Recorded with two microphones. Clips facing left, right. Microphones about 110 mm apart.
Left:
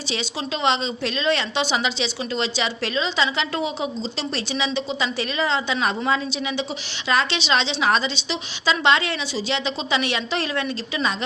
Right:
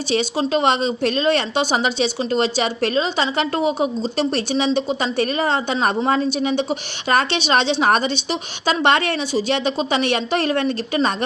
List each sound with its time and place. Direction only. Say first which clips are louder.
0.1 s a woman's voice: right 9 dB; 45° right (ahead or behind)